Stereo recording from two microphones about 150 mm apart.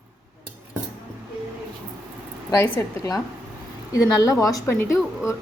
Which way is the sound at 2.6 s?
20° left (ahead or behind).